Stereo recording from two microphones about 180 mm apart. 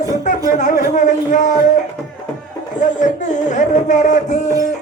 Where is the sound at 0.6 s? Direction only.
45° left (ahead or behind).